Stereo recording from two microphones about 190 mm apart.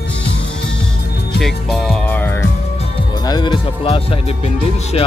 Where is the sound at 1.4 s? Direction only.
Centre (ahead or behind).